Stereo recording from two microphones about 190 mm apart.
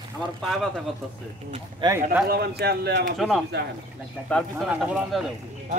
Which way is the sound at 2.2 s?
55° right (ahead or behind).